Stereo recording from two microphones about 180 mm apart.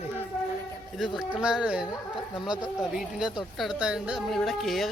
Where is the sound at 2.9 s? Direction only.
5° right (ahead or behind).